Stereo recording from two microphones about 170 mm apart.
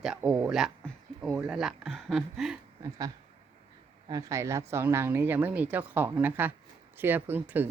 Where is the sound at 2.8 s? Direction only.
20° right (ahead or behind).